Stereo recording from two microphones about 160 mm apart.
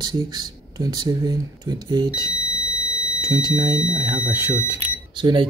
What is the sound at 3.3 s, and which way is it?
Speech, 25° right (ahead or behind).